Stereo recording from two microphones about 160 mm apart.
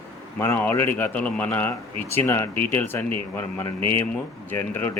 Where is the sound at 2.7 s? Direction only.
15° left (ahead or behind).